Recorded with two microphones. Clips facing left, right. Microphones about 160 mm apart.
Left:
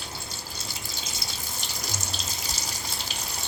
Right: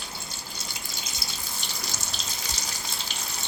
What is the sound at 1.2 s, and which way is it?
Water tap, 20° left (ahead or behind).